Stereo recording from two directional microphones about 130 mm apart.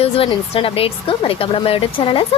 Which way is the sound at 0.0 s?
45° left (ahead or behind).